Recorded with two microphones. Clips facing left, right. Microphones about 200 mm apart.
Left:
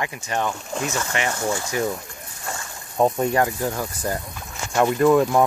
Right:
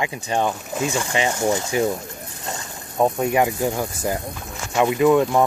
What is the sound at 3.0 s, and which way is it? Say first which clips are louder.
Speech: right 1 dB; 10° right (ahead or behind).